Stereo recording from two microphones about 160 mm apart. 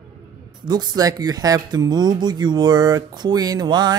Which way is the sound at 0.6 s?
25° right (ahead or behind).